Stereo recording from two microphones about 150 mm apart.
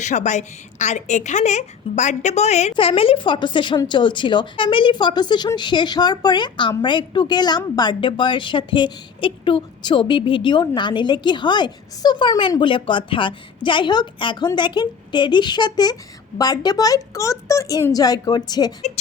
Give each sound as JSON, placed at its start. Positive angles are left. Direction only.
{"t": 0.0, "sound": "a woman's voice", "side_deg": 55}